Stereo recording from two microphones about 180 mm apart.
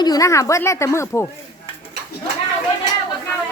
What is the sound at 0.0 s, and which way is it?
Speech, 20° left (ahead or behind).